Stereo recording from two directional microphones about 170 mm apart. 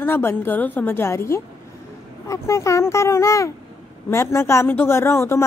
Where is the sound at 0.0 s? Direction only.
15° left (ahead or behind).